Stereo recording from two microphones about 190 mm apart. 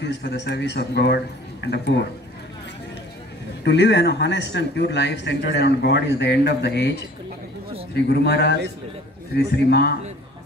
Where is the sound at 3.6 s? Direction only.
65° left (ahead or behind).